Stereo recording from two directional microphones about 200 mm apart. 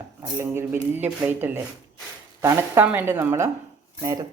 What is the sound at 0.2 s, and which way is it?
Speech, 10° right (ahead or behind).